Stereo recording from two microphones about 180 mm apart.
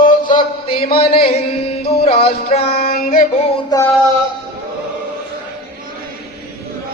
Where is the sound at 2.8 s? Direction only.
55° left (ahead or behind).